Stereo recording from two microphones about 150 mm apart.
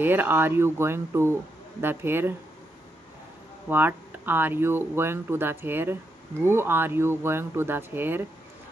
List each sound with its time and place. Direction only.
0.0 s speech: 15° right (ahead or behind)
3.6 s speech: 15° right (ahead or behind)